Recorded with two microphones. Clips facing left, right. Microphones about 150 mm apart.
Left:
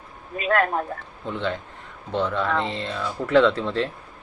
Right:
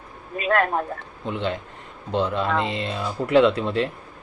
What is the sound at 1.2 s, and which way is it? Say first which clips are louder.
Speech: right 1 dB; 15° right (ahead or behind).